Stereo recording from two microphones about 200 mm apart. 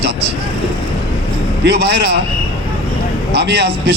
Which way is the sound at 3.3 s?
55° right (ahead or behind).